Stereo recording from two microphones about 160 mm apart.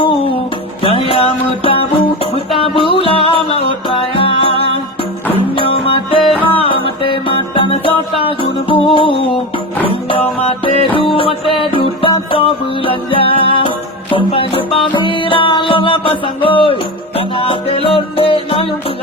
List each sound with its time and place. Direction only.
0.0 s music: 35° left (ahead or behind)
5.5 s music: 35° left (ahead or behind)